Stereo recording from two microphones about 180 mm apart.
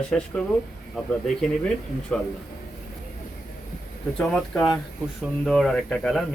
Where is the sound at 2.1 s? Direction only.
5° left (ahead or behind).